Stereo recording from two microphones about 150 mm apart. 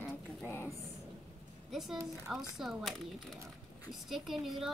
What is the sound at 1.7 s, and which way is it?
A child's voice, centre (ahead or behind).